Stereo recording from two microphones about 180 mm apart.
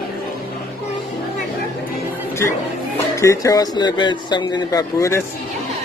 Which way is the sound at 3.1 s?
15° left (ahead or behind).